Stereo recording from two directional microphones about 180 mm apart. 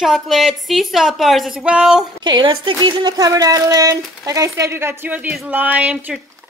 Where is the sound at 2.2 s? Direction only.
25° right (ahead or behind).